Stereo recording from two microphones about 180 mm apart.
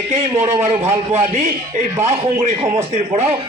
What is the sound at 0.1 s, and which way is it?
A man's voice, 40° right (ahead or behind).